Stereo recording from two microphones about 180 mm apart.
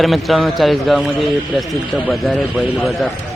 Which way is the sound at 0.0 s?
Centre (ahead or behind).